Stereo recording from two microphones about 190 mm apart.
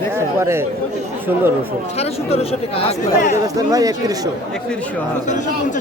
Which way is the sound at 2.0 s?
30° left (ahead or behind).